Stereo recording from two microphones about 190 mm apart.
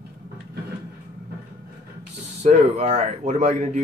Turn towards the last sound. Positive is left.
turn(degrees=-40)  # may be behind; listen again after turning